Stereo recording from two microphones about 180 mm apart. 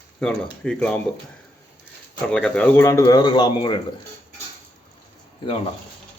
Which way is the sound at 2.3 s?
5° left (ahead or behind).